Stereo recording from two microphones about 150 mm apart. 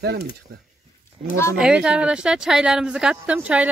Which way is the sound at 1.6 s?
5° right (ahead or behind).